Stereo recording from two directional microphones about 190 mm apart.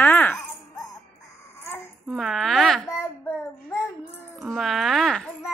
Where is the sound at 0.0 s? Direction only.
10° left (ahead or behind).